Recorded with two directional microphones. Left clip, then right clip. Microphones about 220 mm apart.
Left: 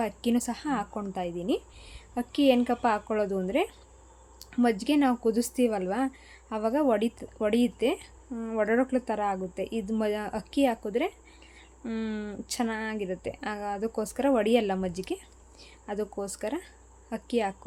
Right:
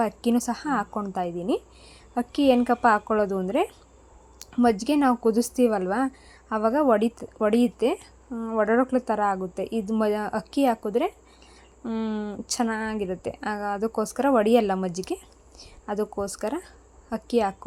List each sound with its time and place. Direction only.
0.0 s speech: 15° right (ahead or behind)